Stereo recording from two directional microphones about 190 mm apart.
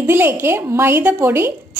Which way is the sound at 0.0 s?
10° right (ahead or behind).